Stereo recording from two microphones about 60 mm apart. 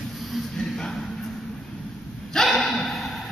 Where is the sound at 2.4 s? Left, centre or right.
Centre.